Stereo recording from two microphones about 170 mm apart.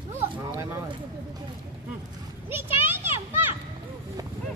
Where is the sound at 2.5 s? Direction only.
15° right (ahead or behind).